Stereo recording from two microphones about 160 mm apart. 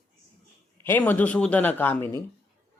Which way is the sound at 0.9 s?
10° left (ahead or behind).